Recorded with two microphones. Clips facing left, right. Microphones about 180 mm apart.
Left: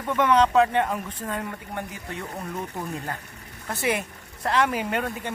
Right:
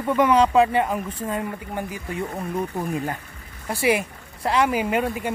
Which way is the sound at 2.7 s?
15° right (ahead or behind).